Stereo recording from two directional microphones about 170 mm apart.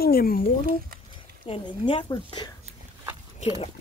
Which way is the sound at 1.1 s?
30° left (ahead or behind).